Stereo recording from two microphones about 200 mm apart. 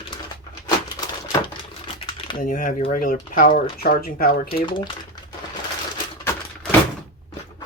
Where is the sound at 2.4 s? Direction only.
40° left (ahead or behind).